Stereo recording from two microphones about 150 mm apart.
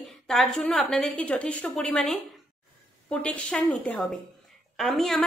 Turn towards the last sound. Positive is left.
turn(degrees=5)  # may be behind; listen again after turning